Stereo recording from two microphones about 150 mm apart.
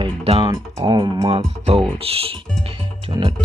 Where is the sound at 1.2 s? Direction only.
40° right (ahead or behind).